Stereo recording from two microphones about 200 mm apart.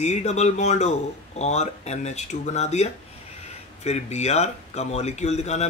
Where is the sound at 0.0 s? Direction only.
35° left (ahead or behind).